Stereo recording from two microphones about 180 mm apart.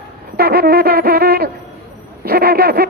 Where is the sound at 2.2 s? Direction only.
55° right (ahead or behind).